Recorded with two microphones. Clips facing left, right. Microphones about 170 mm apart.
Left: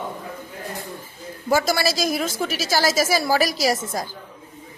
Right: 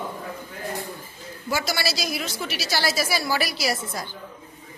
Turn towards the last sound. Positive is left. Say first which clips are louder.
# left 5 dB
turn(degrees=40)  # may be behind; listen again after turning